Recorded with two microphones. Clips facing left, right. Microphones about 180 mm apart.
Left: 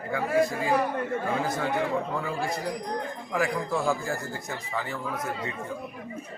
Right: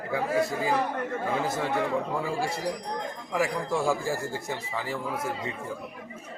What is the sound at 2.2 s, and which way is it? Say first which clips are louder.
Speech: right 1 dB; 30° right (ahead or behind).